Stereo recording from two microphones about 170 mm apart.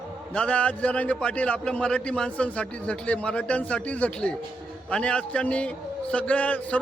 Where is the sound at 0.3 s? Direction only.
5° left (ahead or behind).